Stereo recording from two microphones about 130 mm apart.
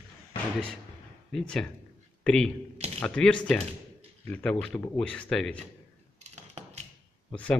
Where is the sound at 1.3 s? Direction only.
5° left (ahead or behind).